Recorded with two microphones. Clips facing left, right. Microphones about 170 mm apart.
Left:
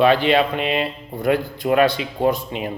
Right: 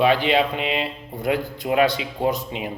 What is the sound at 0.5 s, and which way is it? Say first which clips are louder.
Music: left 3 dB; 60° left (ahead or behind).